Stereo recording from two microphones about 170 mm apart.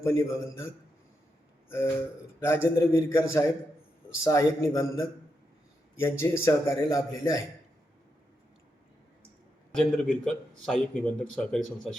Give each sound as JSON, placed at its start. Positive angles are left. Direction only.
{"t": 0.0, "sound": "a man's voice", "side_deg": 15}
{"t": 2.4, "sound": "a man's voice", "side_deg": 15}
{"t": 9.7, "sound": "speech", "side_deg": 5}